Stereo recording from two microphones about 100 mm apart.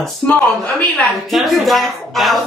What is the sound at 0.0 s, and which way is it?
Speech, 5° left (ahead or behind).